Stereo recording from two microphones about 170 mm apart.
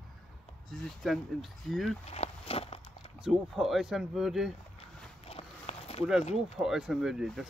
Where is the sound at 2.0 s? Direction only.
40° left (ahead or behind).